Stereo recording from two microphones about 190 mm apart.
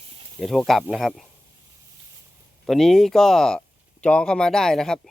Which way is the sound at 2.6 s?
Centre (ahead or behind).